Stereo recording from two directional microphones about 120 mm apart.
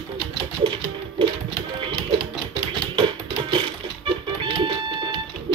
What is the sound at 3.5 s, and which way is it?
Music, 45° right (ahead or behind).